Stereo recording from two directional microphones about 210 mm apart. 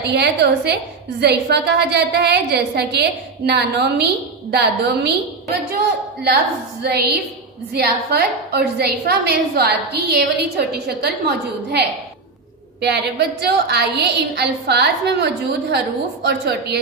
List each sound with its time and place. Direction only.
0.0 s a woman's voice: 55° right (ahead or behind)
6.2 s a woman's voice: 50° right (ahead or behind)